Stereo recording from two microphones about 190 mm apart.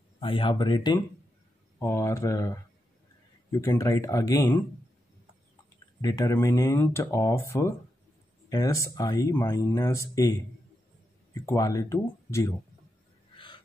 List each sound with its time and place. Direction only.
0.2 s speech: 25° left (ahead or behind)
5.9 s speech: 20° left (ahead or behind)
11.3 s speech: 15° left (ahead or behind)